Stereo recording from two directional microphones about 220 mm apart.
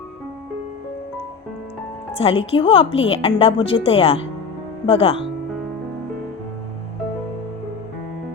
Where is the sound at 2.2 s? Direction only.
25° left (ahead or behind).